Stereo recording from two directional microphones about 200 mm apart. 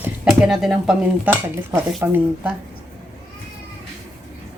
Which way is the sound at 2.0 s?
10° right (ahead or behind).